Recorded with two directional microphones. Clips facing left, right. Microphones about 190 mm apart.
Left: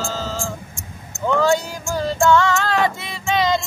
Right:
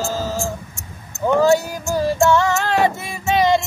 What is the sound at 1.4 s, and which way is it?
Music, 40° right (ahead or behind).